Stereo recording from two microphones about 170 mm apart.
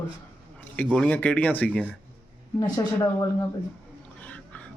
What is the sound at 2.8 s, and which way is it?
Speech, 20° left (ahead or behind).